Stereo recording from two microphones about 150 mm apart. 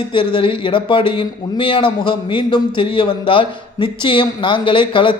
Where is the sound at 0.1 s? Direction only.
35° left (ahead or behind).